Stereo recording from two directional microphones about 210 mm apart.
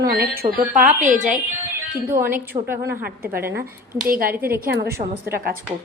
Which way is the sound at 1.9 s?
10° right (ahead or behind).